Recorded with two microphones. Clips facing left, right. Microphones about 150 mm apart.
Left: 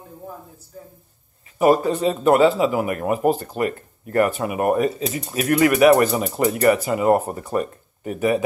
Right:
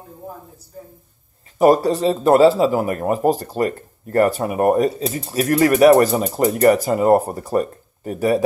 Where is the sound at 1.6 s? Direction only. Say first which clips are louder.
Right 3 dB; 35° right (ahead or behind).